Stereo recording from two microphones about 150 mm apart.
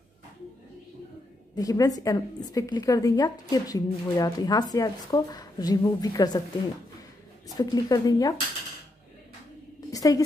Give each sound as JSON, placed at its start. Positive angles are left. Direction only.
{"t": 1.5, "sound": "a woman's voice", "side_deg": 25}
{"t": 7.4, "sound": "a woman's voice", "side_deg": 25}
{"t": 9.8, "sound": "a sound", "side_deg": 25}